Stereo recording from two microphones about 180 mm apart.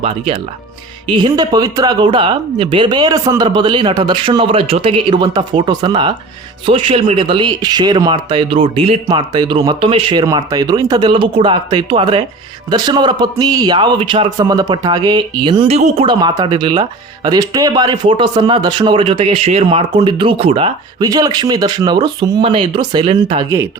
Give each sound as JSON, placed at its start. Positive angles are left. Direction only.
{"t": 1.1, "sound": "speech", "side_deg": -25}
{"t": 21.0, "sound": "speech", "side_deg": -20}